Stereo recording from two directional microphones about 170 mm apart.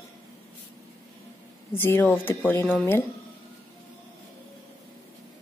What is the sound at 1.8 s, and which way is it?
Speech, 15° left (ahead or behind).